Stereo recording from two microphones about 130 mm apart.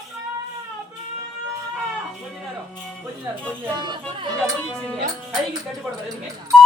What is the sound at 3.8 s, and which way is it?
Speech, 35° right (ahead or behind).